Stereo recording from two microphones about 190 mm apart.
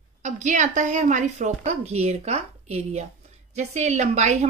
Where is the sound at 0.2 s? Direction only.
40° right (ahead or behind).